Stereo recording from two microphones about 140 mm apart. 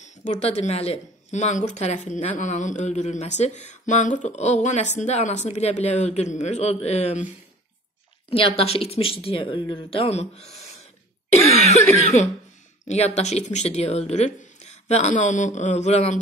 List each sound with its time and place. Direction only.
0.0 s speech: 60° left (ahead or behind)
8.3 s speech: 40° left (ahead or behind)
11.3 s cough: 50° left (ahead or behind)
12.8 s speech: 50° left (ahead or behind)